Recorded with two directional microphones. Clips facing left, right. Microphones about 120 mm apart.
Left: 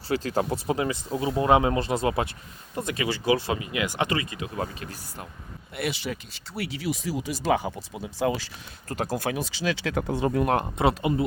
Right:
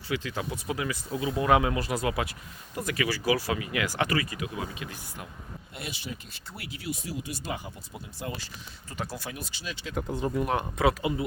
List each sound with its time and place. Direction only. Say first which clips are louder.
0.1 s speech: left 6 dB; 40° left (ahead or behind); by 4.5 s 25° left (ahead or behind)
4.5 s speech: left 4 dB; 40° left (ahead or behind)
5.7 s speech: left 9 dB; 70° left (ahead or behind); by 8.4 s 90° left
8.9 s speech: left 9 dB; 45° left (ahead or behind)
9.3 s speech: left 11 dB; 90° left; by 10.6 s 70° left (ahead or behind)
10.8 s speech: left 3 dB; 25° left (ahead or behind)